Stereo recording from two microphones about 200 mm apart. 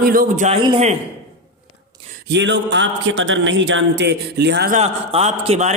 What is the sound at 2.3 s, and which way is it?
A man's voice, 60° right (ahead or behind).